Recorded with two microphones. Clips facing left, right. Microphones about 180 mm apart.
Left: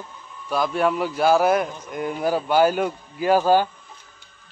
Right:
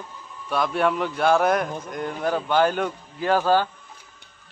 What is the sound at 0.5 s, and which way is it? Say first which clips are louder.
A man's voice: left 1 dB; centre (ahead or behind).